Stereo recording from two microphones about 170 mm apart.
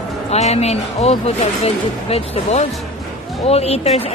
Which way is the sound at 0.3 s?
40° left (ahead or behind).